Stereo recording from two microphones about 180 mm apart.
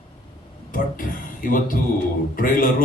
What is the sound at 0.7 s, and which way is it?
A man's voice, 50° left (ahead or behind).